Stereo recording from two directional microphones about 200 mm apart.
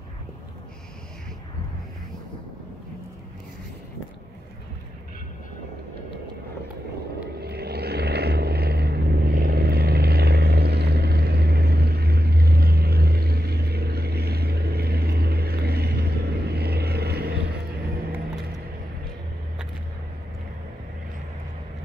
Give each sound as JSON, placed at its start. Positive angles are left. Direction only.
{"t": 7.3, "sound": "vehicle", "side_deg": -55}